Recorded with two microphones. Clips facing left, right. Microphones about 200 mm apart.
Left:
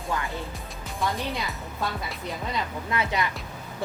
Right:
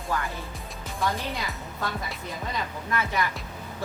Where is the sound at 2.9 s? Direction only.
20° left (ahead or behind).